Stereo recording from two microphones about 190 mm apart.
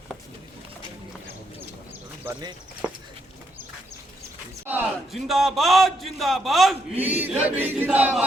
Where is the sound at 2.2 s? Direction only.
15° right (ahead or behind).